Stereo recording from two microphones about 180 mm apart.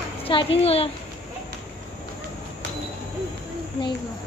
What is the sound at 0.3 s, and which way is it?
Speech, 30° left (ahead or behind).